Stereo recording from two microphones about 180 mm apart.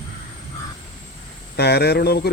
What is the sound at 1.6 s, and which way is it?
Speech, 65° left (ahead or behind).